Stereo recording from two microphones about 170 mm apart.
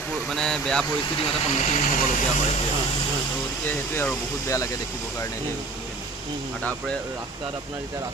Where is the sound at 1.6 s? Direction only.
45° left (ahead or behind).